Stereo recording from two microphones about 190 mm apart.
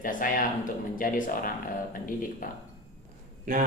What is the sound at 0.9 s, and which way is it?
Speech, 45° left (ahead or behind).